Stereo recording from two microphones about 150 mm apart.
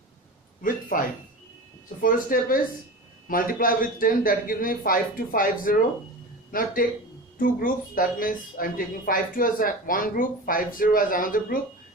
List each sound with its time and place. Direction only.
0.6 s a woman's voice: 65° left (ahead or behind)